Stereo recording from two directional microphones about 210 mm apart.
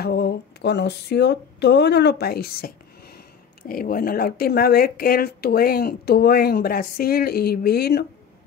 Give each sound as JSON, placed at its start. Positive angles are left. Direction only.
{"t": 0.0, "sound": "speech", "side_deg": 50}